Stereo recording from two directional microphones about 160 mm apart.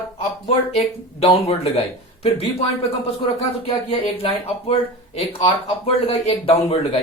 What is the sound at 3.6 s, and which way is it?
Speech, 35° left (ahead or behind).